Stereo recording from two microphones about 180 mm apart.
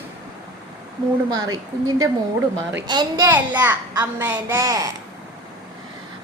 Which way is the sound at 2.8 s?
25° right (ahead or behind).